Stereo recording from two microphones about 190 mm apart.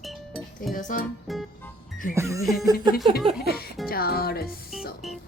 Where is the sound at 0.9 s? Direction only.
45° left (ahead or behind).